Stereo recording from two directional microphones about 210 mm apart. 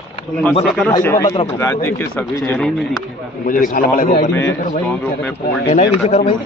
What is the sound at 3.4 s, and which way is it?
Speech, 40° left (ahead or behind).